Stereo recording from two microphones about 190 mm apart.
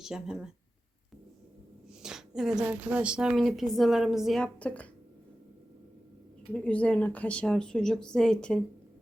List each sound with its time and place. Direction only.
0.0 s a woman's voice: 5° right (ahead or behind)
2.0 s a woman's voice: 5° right (ahead or behind)
6.5 s a woman's voice: 5° left (ahead or behind)